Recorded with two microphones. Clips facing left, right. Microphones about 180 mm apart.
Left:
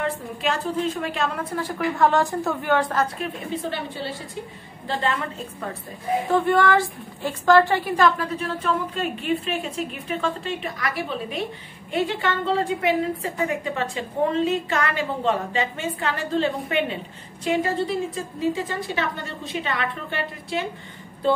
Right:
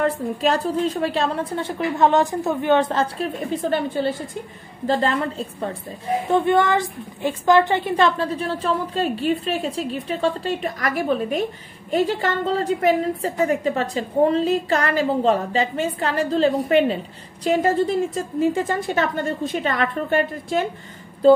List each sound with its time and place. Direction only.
0.0 s a woman's voice: 35° right (ahead or behind)
3.7 s a woman's voice: 50° right (ahead or behind)
4.8 s a woman's voice: 35° right (ahead or behind)
6.2 s a woman's voice: 20° right (ahead or behind); by 20.6 s 45° right (ahead or behind)